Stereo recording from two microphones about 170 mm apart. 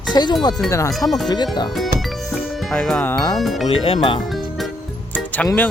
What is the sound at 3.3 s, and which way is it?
Speech, centre (ahead or behind).